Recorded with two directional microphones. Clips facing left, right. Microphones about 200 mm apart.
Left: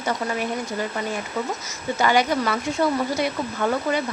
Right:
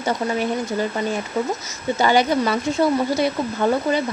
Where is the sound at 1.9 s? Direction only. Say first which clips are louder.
Right 3 dB; 30° right (ahead or behind).